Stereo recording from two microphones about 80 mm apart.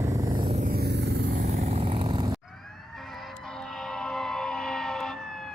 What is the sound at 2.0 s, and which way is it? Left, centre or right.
Vehicle, right.